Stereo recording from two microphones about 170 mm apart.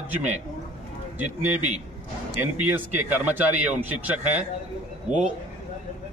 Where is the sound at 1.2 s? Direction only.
45° right (ahead or behind).